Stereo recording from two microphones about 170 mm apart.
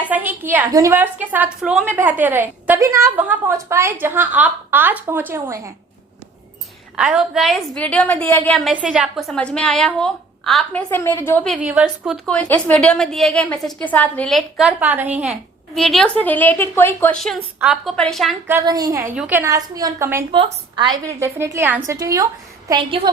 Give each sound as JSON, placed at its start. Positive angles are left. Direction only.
{"t": 0.1, "sound": "a woman's voice", "side_deg": -10}
{"t": 6.9, "sound": "a woman's voice", "side_deg": -5}
{"t": 8.7, "sound": "a woman's voice", "side_deg": -5}
{"t": 11.6, "sound": "a woman's voice", "side_deg": -5}
{"t": 14.8, "sound": "a woman's voice", "side_deg": -10}
{"t": 18.6, "sound": "a woman's voice", "side_deg": -25}
{"t": 19.1, "sound": "a woman's voice", "side_deg": -5}
{"t": 19.4, "sound": "a woman's voice", "side_deg": -20}
{"t": 20.3, "sound": "a woman's voice", "side_deg": -30}
{"t": 21.1, "sound": "a woman's voice", "side_deg": -15}